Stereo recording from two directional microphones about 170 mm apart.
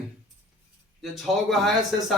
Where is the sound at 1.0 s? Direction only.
Centre (ahead or behind).